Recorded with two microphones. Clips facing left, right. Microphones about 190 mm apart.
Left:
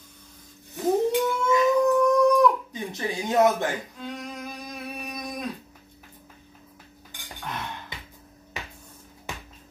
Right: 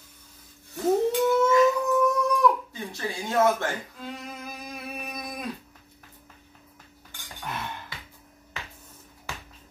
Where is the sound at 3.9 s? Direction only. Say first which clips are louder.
Left 2 dB; 5° right (ahead or behind).